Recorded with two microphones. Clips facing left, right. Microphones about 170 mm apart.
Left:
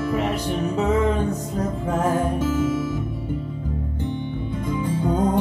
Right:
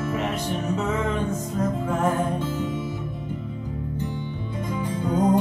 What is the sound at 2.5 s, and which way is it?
Music, 90° left.